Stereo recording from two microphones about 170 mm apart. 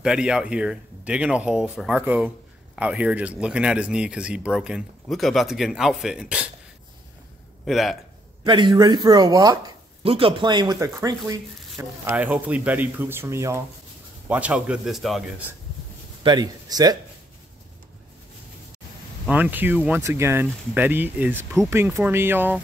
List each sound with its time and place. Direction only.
0.0 s speech: 5° right (ahead or behind)
7.6 s speech: centre (ahead or behind)
8.5 s speech: 25° right (ahead or behind)
10.0 s speech: 35° right (ahead or behind); by 15.4 s 5° right (ahead or behind)
16.2 s speech: 25° right (ahead or behind)
19.2 s speech: 10° right (ahead or behind)